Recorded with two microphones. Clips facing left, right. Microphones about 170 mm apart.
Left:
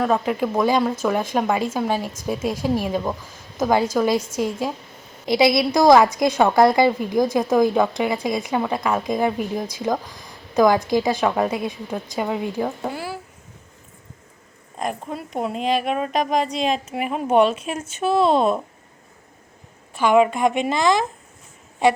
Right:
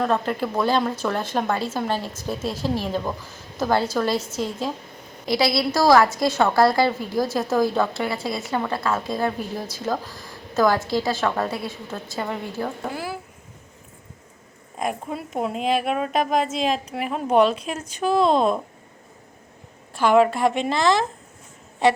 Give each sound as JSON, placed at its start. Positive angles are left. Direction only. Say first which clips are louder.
{"t": 0.0, "sound": "a woman's voice", "louder": "left 2 dB", "side_deg": 5}
{"t": 5.3, "sound": "a woman's voice", "louder": "left 4 dB", "side_deg": 20}
{"t": 12.9, "sound": "a sound", "louder": "even", "side_deg": 0}
{"t": 14.8, "sound": "a woman's voice", "louder": "even", "side_deg": -5}
{"t": 20.0, "sound": "a woman's voice", "louder": "left 1 dB", "side_deg": 10}